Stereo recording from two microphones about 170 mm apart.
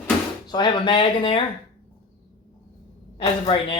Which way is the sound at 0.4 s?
25° left (ahead or behind).